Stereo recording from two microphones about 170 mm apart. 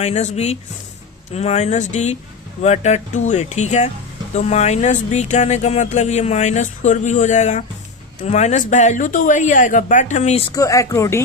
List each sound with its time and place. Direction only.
0.0 s speech: 40° left (ahead or behind)
10.5 s speech: 20° left (ahead or behind)